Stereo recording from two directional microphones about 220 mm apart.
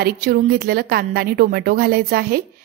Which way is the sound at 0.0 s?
40° right (ahead or behind).